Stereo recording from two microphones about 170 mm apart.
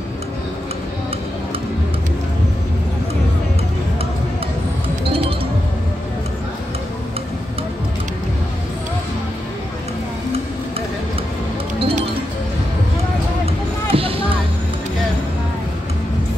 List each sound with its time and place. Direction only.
11.8 s music: 35° right (ahead or behind)
13.9 s music: 35° right (ahead or behind)